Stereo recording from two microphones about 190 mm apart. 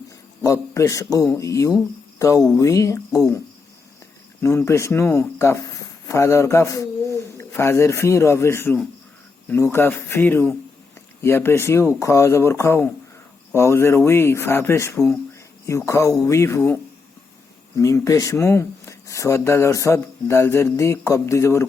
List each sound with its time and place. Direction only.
0.4 s speech: 15° left (ahead or behind)
4.4 s speech: 15° left (ahead or behind)
17.7 s speech: 15° left (ahead or behind)